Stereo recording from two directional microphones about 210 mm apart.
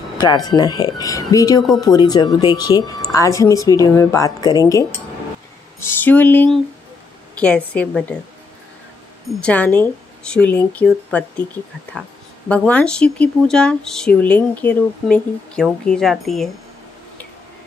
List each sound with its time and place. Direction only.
0.2 s speech: 20° left (ahead or behind)
9.4 s speech: 5° left (ahead or behind)
12.4 s speech: 5° left (ahead or behind)